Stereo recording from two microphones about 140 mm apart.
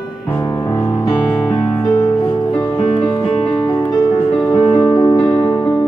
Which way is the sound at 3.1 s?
35° left (ahead or behind).